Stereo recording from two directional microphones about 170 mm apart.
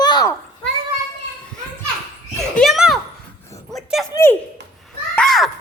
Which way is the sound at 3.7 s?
Centre (ahead or behind).